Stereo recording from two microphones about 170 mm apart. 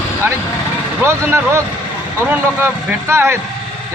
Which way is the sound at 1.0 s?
15° right (ahead or behind).